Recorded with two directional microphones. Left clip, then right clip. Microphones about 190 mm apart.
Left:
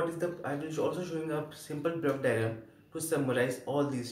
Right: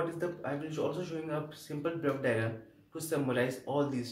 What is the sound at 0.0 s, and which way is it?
Speech, centre (ahead or behind).